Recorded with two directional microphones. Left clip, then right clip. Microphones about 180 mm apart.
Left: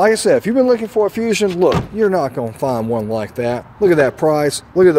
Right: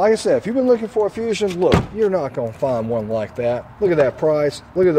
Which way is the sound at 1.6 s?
40° left (ahead or behind).